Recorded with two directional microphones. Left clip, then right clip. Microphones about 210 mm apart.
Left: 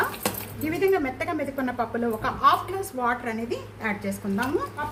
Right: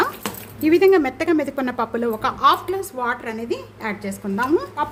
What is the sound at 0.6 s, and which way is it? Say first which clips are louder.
A woman's voice: right 9 dB; 55° right (ahead or behind).